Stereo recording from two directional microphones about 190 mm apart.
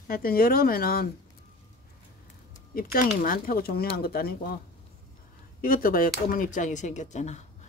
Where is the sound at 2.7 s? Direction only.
50° left (ahead or behind).